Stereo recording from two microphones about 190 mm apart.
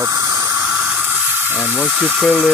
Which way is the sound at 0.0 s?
15° right (ahead or behind).